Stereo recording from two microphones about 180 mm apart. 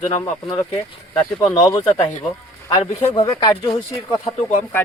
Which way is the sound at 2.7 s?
30° left (ahead or behind).